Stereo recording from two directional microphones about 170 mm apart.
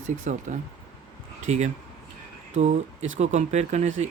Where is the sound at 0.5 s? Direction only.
45° right (ahead or behind).